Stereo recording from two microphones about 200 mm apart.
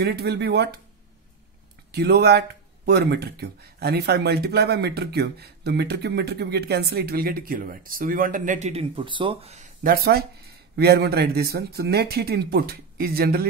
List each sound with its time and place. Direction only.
0.0 s speech: 55° right (ahead or behind)
1.9 s speech: 55° right (ahead or behind); by 9.9 s 35° right (ahead or behind)
10.8 s speech: 55° right (ahead or behind)